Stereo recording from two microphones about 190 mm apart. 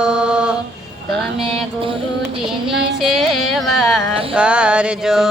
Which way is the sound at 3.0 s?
Centre (ahead or behind).